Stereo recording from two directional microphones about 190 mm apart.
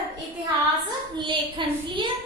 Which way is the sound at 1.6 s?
25° right (ahead or behind).